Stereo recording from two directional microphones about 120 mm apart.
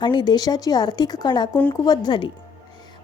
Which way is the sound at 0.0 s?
40° left (ahead or behind).